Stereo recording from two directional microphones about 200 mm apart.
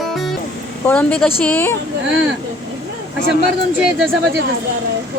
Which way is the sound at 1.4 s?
10° left (ahead or behind).